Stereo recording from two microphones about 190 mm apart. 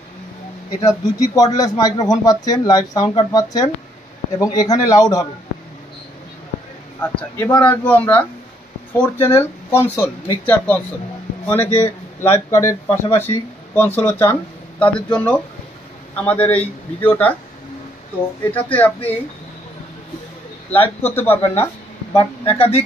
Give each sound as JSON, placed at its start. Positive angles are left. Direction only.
{"t": 0.8, "sound": "speech", "side_deg": 20}
{"t": 7.0, "sound": "speech", "side_deg": 10}
{"t": 18.4, "sound": "speech", "side_deg": 10}
{"t": 20.8, "sound": "speech", "side_deg": 10}
{"t": 22.1, "sound": "speech", "side_deg": 30}